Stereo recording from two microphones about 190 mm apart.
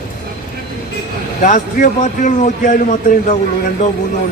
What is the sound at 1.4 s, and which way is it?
Speech, 40° left (ahead or behind).